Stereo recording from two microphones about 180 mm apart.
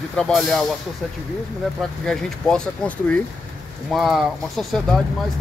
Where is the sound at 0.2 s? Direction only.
Centre (ahead or behind).